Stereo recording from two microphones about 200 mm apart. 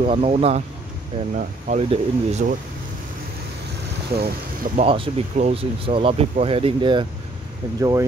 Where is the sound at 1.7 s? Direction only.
35° right (ahead or behind).